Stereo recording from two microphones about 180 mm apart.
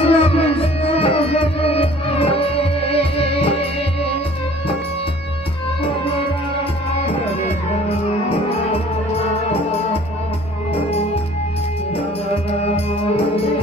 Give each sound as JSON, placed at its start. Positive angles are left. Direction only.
{"t": 0.0, "sound": "music", "side_deg": 35}
{"t": 5.9, "sound": "music", "side_deg": 30}
{"t": 9.2, "sound": "music", "side_deg": 35}
{"t": 12.4, "sound": "music", "side_deg": 35}